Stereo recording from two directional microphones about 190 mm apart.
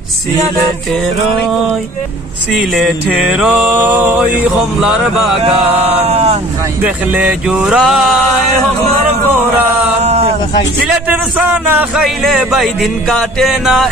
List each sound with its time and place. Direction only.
2.5 s speech: centre (ahead or behind)
5.7 s chant: 35° right (ahead or behind)
6.8 s speech: 5° right (ahead or behind)
10.0 s a sound: 35° right (ahead or behind)
11.1 s speech: 10° right (ahead or behind)